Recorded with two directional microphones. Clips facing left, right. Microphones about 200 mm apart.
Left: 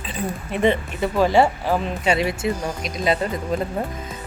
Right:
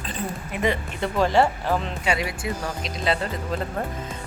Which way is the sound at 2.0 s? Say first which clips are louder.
Left 5 dB; 25° left (ahead or behind).